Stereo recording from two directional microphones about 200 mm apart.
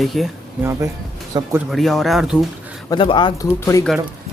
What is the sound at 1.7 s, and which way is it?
Speech, centre (ahead or behind).